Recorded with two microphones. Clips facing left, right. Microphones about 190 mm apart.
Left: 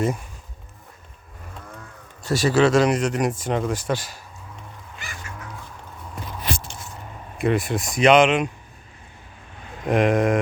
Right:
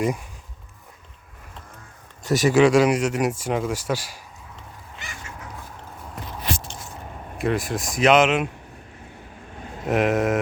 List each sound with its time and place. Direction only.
2.2 s speech: 15° right (ahead or behind)
5.0 s dog: 20° right (ahead or behind)
7.3 s speech: centre (ahead or behind)
9.6 s a sound: 40° right (ahead or behind)
9.8 s speech: 5° right (ahead or behind)